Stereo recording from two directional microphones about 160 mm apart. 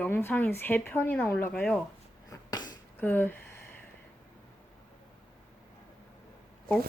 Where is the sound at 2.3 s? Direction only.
25° left (ahead or behind).